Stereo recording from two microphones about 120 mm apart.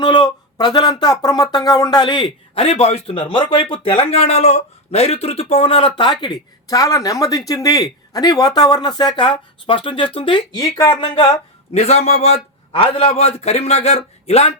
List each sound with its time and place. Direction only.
0.0 s speech: 40° left (ahead or behind)
2.6 s speech: 60° left (ahead or behind); by 11.3 s 45° left (ahead or behind)
11.7 s a man's voice: 60° left (ahead or behind)